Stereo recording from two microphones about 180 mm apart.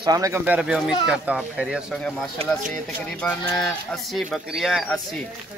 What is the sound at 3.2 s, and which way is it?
Speech, 5° left (ahead or behind).